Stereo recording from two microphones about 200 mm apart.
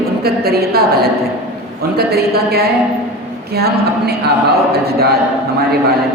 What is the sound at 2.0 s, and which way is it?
A woman's voice, 50° right (ahead or behind).